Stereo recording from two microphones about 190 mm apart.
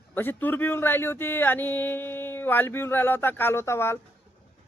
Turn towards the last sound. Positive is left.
turn(degrees=15)  # may be behind; listen again after turning